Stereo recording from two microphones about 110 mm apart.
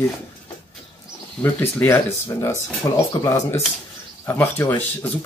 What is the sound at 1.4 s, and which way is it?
Speech, 20° left (ahead or behind).